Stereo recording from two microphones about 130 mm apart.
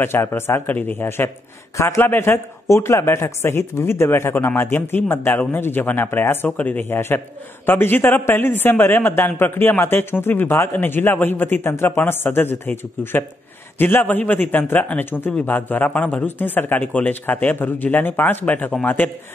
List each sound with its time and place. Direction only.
0.0 s a man's voice: 15° left (ahead or behind)